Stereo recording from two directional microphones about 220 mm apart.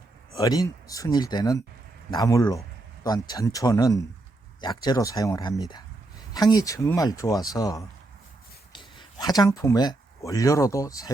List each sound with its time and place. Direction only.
0.3 s speech: 15° left (ahead or behind)